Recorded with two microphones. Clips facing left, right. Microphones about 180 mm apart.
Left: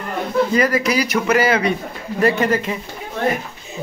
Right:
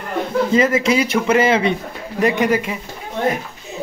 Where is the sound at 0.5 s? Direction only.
25° right (ahead or behind).